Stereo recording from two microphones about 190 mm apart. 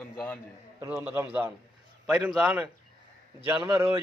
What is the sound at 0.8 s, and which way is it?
A man's voice, 15° right (ahead or behind).